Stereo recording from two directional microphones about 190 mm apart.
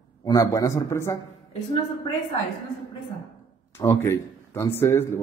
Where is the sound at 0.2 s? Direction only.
20° left (ahead or behind).